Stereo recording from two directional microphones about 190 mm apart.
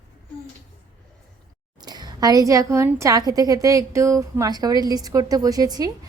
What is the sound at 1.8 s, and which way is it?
A woman's voice, 20° right (ahead or behind).